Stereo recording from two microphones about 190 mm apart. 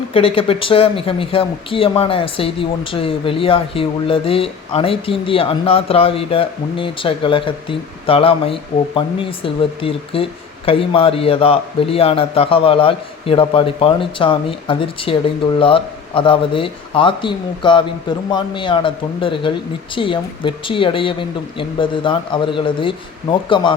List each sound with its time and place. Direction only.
0.1 s speech: 30° left (ahead or behind)